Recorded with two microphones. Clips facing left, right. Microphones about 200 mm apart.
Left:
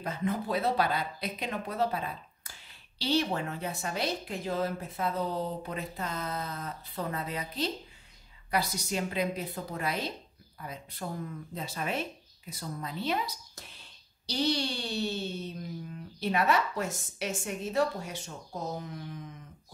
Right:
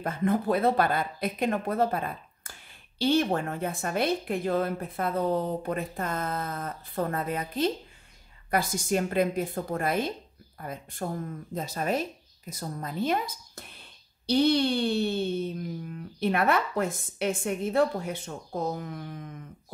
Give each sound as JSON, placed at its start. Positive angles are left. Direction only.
{"t": 0.0, "sound": "speech", "side_deg": -55}